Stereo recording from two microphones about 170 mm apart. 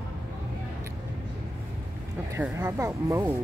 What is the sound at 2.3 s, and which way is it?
A woman's voice, 10° right (ahead or behind).